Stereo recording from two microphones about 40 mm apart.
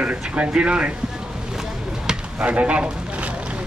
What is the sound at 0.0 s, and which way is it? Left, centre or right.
Speech, right.